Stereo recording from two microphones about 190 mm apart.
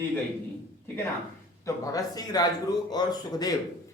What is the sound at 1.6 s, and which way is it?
A man's voice, 20° left (ahead or behind).